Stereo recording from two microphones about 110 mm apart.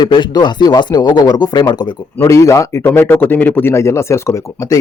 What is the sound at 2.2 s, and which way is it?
Speech, 30° left (ahead or behind).